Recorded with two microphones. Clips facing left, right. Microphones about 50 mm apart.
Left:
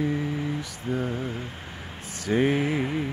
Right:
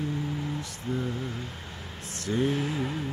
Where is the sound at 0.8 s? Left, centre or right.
Left.